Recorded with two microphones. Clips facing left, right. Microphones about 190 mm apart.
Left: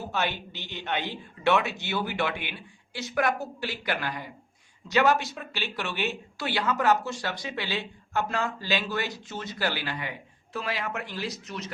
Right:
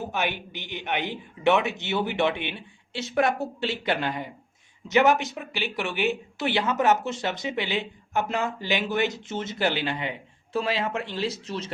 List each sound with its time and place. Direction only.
0.0 s speech: 15° right (ahead or behind)